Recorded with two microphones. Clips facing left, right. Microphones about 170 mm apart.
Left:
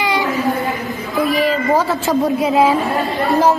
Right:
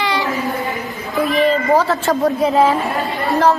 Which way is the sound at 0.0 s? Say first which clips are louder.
Left 1 dB; 15° left (ahead or behind).